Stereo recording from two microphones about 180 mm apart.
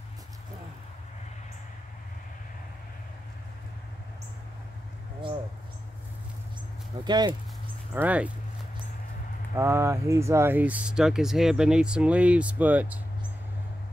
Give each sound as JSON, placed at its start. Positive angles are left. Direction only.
{"t": 7.1, "sound": "speech", "side_deg": -25}
{"t": 7.9, "sound": "speech", "side_deg": -10}
{"t": 9.6, "sound": "speech", "side_deg": -15}